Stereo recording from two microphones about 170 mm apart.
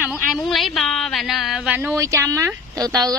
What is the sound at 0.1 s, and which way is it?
A woman's voice, centre (ahead or behind).